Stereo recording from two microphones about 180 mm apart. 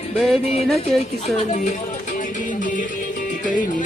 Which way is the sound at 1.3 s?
40° left (ahead or behind).